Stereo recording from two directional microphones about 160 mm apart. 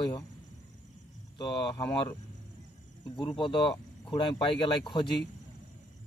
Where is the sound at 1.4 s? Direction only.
30° left (ahead or behind).